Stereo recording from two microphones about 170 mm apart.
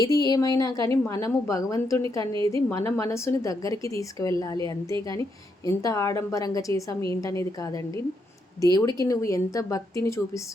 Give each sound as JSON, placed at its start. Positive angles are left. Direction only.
{"t": 0.0, "sound": "a woman's voice", "side_deg": 20}